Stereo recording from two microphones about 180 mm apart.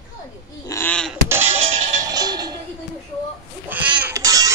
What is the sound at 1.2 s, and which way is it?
Music, 10° right (ahead or behind).